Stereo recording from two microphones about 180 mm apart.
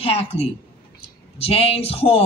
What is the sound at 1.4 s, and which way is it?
Speech, 35° left (ahead or behind).